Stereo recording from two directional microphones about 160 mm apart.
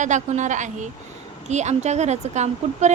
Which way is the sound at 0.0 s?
50° right (ahead or behind).